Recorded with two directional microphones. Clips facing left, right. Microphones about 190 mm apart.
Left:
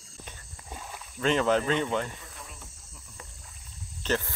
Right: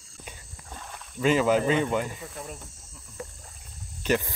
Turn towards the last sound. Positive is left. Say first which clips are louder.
# right 4 dB
turn(degrees=-15)  # may be behind; listen again after turning